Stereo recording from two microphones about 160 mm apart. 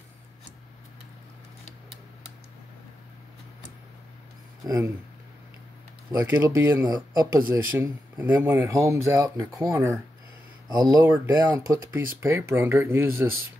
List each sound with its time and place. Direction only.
4.6 s speech: 20° right (ahead or behind)
6.1 s speech: 15° right (ahead or behind)